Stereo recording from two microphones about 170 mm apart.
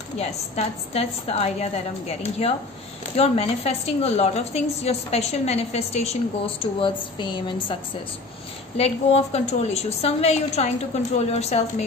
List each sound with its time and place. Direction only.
0.2 s a woman's voice: 35° left (ahead or behind)